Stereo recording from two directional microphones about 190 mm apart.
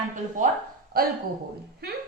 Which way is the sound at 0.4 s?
40° right (ahead or behind).